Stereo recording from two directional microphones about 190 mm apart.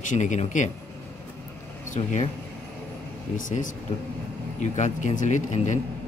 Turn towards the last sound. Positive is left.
turn(degrees=40)  # may be behind; listen again after turning